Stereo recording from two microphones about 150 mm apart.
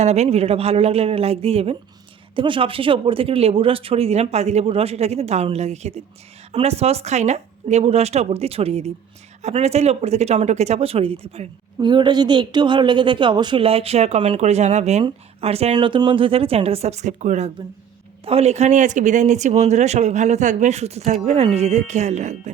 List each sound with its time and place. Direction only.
0.0 s speech: 45° right (ahead or behind)